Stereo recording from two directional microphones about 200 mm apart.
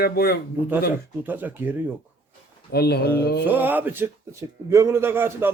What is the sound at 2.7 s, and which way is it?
Speech, 55° left (ahead or behind).